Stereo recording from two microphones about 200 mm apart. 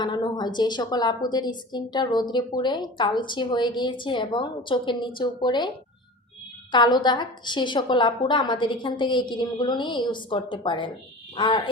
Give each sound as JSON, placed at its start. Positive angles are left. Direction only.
{"t": 0.0, "sound": "a woman's voice", "side_deg": 20}